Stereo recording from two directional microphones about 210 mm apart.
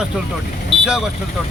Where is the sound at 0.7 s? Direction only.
25° left (ahead or behind).